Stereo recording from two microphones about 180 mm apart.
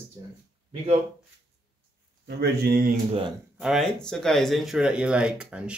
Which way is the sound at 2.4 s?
60° right (ahead or behind).